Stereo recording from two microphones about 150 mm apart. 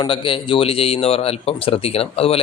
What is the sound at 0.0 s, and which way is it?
Speech, 35° left (ahead or behind).